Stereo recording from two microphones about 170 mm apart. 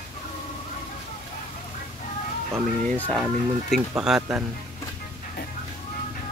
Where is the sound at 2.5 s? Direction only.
5° left (ahead or behind).